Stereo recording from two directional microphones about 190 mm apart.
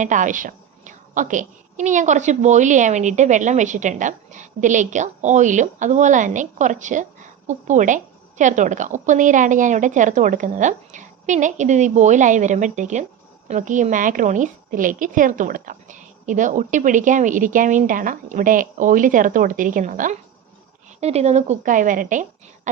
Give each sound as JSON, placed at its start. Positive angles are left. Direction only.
{"t": 0.0, "sound": "a woman's voice", "side_deg": -40}